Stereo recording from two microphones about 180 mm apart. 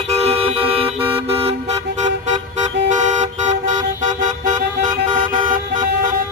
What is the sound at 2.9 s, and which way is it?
Car, 40° right (ahead or behind).